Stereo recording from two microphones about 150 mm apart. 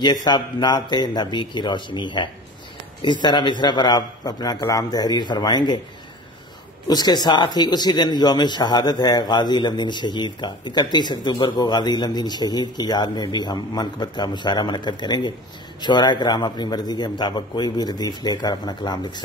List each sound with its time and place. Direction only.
0.0 s speech: 30° left (ahead or behind)
6.9 s speech: 25° left (ahead or behind)